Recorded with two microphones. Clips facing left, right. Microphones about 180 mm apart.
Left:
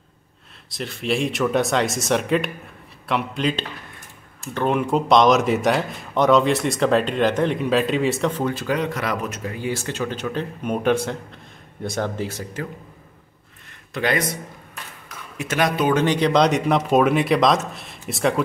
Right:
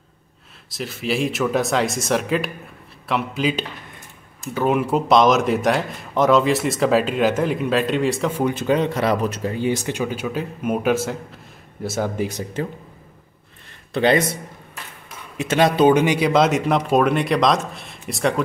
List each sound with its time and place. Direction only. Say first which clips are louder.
0.7 s speech: even; centre (ahead or behind)
8.5 s speech: right 4 dB; 25° right (ahead or behind); by 12.1 s 5° right (ahead or behind)
12.2 s speech: right 4 dB; 15° right (ahead or behind)
13.9 s speech: right 5 dB; 25° right (ahead or behind)
15.3 s speech: right 4 dB; 25° right (ahead or behind)
16.0 s speech: right 1 dB; 10° right (ahead or behind)